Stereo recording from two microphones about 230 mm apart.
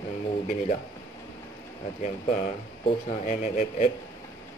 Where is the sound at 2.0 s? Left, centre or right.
Left.